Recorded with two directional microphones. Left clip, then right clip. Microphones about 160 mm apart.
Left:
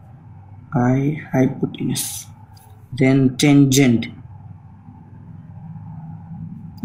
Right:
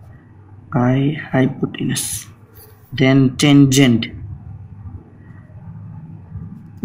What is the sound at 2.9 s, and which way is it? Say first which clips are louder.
Speech: right 2 dB; 25° right (ahead or behind).